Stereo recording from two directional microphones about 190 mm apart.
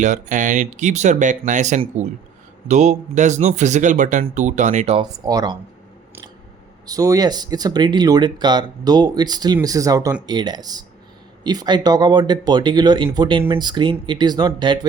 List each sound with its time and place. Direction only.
0.0 s speech: 40° right (ahead or behind)
4.9 s speech: 20° right (ahead or behind)
6.8 s speech: 20° right (ahead or behind)